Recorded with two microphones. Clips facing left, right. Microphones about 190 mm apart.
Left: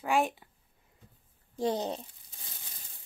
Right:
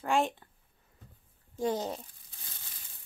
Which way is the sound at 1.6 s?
20° left (ahead or behind).